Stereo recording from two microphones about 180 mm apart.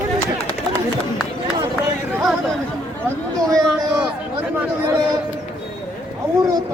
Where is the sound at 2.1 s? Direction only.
5° right (ahead or behind).